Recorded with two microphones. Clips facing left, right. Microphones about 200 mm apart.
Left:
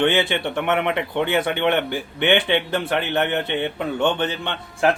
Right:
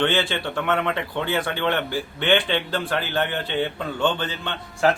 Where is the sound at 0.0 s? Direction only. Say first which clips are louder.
Left 3 dB; 20° left (ahead or behind).